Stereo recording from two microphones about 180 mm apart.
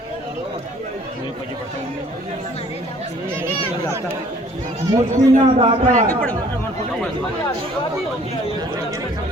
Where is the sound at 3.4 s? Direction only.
15° right (ahead or behind).